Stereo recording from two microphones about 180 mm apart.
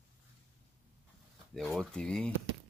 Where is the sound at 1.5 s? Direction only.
Centre (ahead or behind).